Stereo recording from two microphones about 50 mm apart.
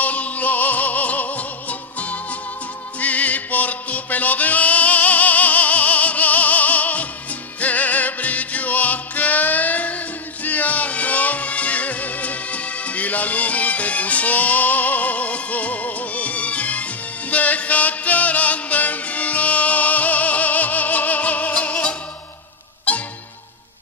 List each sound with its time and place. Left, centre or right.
0.0 s music: left